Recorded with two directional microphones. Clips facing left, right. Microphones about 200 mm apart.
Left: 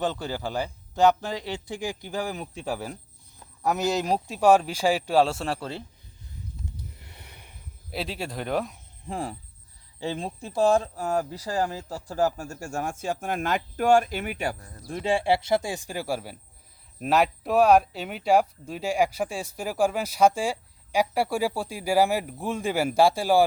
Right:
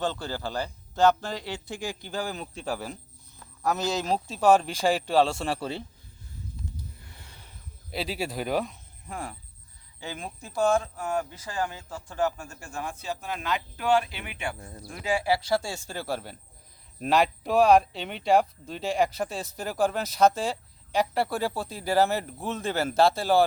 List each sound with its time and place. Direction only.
0.0 s speech: 15° left (ahead or behind); by 5.8 s centre (ahead or behind)
7.0 s a sound: 20° left (ahead or behind)
7.9 s speech: centre (ahead or behind)
9.0 s speech: 30° left (ahead or behind)
14.8 s speech: 30° left (ahead or behind); by 23.5 s 10° left (ahead or behind)